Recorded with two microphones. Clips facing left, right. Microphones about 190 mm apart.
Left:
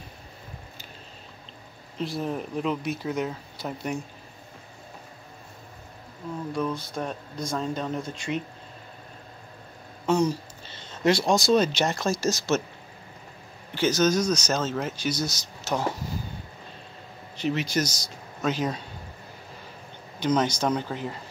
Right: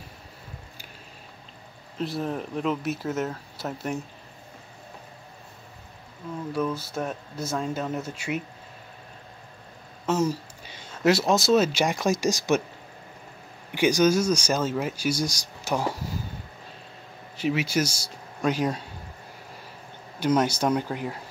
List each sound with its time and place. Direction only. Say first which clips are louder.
2.0 s speech: even; centre (ahead or behind)
6.5 s speech: right 2 dB; 5° right (ahead or behind)
10.0 s a sound: left 1 dB; 5° right (ahead or behind)
11.1 s speech: right 1 dB; 5° right (ahead or behind)
13.7 s speech: right 2 dB; 10° right (ahead or behind)
17.4 s speech: right 1 dB; 5° right (ahead or behind)
20.2 s speech: right 1 dB; 10° right (ahead or behind)